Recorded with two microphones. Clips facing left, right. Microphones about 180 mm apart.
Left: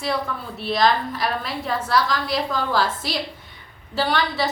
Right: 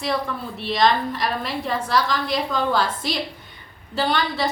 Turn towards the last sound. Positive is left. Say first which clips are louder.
# even
turn(degrees=0)  # may be behind; listen again after turning